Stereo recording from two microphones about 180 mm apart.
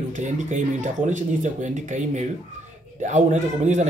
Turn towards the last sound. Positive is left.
turn(degrees=-40)  # may be behind; listen again after turning